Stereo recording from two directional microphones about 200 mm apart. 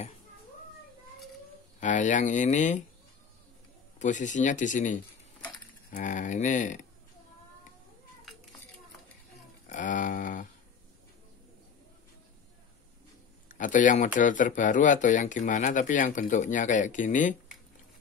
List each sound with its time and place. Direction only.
1.8 s speech: 40° left (ahead or behind)
4.0 s speech: 40° left (ahead or behind)
9.7 s a sound: 40° left (ahead or behind)
13.5 s speech: 40° left (ahead or behind)